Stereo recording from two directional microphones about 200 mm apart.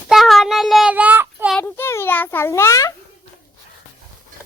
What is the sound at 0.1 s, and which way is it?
Child singing, centre (ahead or behind).